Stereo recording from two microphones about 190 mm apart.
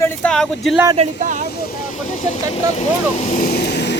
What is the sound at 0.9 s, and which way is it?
Speech, 35° right (ahead or behind).